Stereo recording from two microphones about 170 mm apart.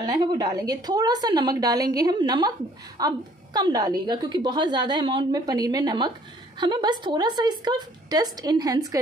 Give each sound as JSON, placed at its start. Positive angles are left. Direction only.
{"t": 0.0, "sound": "a woman's voice", "side_deg": -25}